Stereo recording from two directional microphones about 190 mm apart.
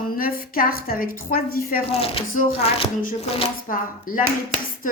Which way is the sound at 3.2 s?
30° left (ahead or behind).